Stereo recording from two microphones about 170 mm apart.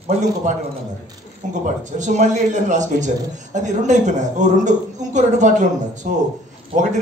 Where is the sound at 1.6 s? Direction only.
45° right (ahead or behind).